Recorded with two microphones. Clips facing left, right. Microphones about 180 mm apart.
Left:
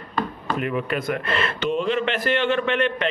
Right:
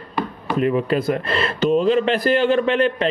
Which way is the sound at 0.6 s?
30° right (ahead or behind).